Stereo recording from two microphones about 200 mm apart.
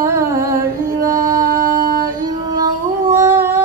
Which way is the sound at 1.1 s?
15° right (ahead or behind).